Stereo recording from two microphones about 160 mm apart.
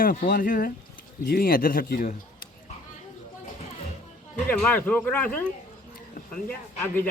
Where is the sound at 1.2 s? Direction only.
75° left (ahead or behind).